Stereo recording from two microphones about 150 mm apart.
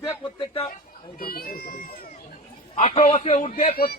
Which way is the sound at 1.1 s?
80° left.